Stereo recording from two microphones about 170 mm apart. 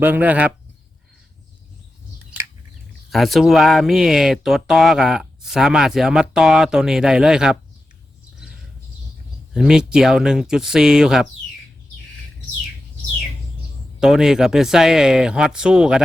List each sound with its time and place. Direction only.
0.0 s speech: 10° right (ahead or behind)
3.1 s speech: centre (ahead or behind)
9.5 s speech: 5° right (ahead or behind)
14.0 s speech: 5° right (ahead or behind)